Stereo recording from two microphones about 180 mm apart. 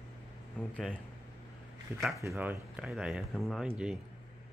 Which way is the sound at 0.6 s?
5° left (ahead or behind).